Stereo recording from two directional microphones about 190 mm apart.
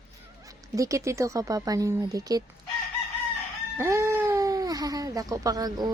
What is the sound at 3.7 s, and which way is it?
Speech, 15° right (ahead or behind).